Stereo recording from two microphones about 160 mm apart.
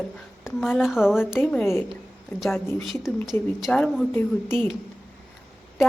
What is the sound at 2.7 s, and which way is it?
A woman's voice, centre (ahead or behind).